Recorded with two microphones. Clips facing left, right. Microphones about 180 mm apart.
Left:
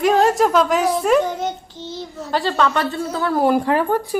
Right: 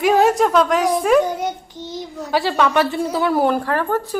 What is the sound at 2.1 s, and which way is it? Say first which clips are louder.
Speech: right 2 dB; centre (ahead or behind).